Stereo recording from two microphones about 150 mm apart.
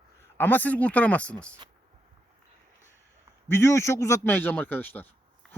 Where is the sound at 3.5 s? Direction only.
15° left (ahead or behind).